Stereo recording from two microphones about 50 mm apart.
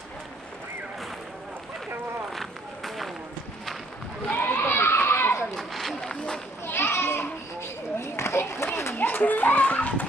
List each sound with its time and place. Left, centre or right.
2.3 s run: centre
4.4 s children playing: left
5.6 s run: centre
6.6 s children playing: left
8.0 s a sound: left
8.9 s children playing: left